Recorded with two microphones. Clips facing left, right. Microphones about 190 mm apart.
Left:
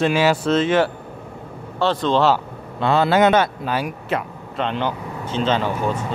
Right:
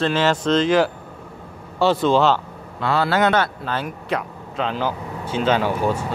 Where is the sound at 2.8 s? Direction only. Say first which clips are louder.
Left 3 dB; 20° left (ahead or behind).